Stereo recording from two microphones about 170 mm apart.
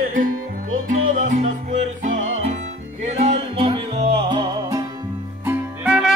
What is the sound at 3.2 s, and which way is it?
Music, 35° right (ahead or behind).